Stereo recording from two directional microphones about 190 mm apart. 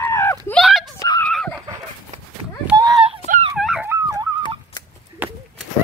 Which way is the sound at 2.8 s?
25° right (ahead or behind).